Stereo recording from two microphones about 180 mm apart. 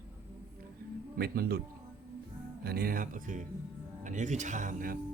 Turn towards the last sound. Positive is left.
turn(degrees=-50)  # may be behind; listen again after turning